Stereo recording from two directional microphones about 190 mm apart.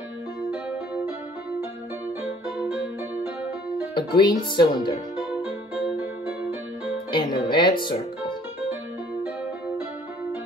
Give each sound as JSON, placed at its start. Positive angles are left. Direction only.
{"t": 0.5, "sound": "music", "side_deg": -5}
{"t": 3.9, "sound": "speech", "side_deg": 25}
{"t": 7.1, "sound": "speech", "side_deg": 25}